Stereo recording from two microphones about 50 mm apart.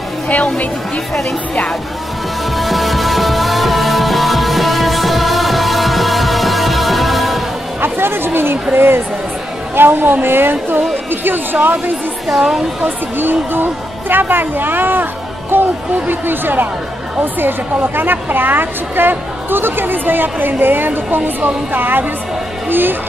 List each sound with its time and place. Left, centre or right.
2.5 s music: centre
7.8 s chatter: right
8.7 s a woman's voice: right
12.3 s speech: centre
13.2 s a woman's voice: right